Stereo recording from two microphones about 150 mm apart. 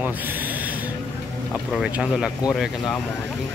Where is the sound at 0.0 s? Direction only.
10° right (ahead or behind).